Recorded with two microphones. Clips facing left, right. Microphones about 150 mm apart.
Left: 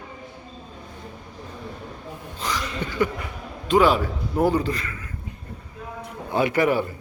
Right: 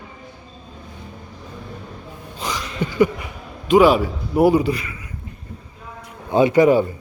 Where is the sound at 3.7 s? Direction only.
10° right (ahead or behind).